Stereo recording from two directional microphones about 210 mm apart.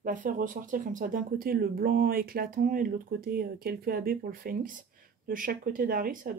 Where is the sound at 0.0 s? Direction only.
40° right (ahead or behind).